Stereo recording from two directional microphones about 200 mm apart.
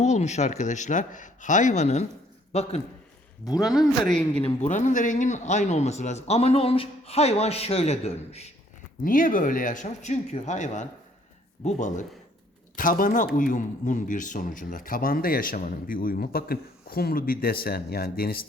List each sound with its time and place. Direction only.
0.0 s speech: 35° left (ahead or behind)
3.4 s speech: 20° left (ahead or behind)
3.7 s speech: centre (ahead or behind)
4.4 s speech: 35° left (ahead or behind)
9.0 s speech: 45° left (ahead or behind)